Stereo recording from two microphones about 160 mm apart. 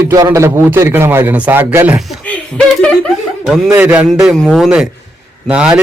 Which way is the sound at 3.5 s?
10° right (ahead or behind).